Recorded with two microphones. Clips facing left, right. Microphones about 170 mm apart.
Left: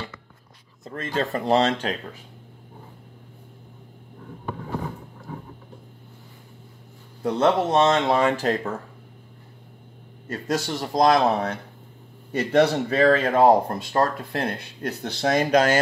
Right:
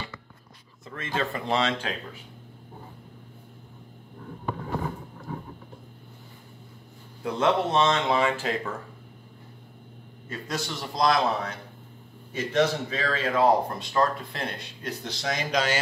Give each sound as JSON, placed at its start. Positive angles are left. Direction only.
{"t": 0.8, "sound": "speech", "side_deg": 40}
{"t": 7.2, "sound": "speech", "side_deg": 40}
{"t": 10.2, "sound": "a man's voice", "side_deg": 45}
{"t": 12.3, "sound": "a man's voice", "side_deg": 60}